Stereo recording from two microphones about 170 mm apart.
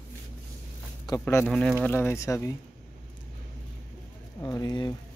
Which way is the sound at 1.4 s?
5° left (ahead or behind).